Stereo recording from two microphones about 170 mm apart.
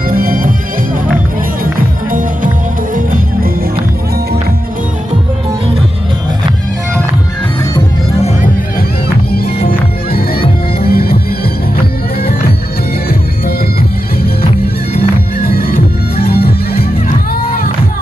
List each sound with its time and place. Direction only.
0.1 s music: 55° right (ahead or behind)
2.1 s music: 50° right (ahead or behind)
9.3 s music: 60° left (ahead or behind)
15.0 s music: 60° left (ahead or behind)